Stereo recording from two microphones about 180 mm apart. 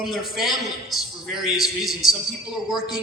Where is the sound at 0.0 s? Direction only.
Centre (ahead or behind).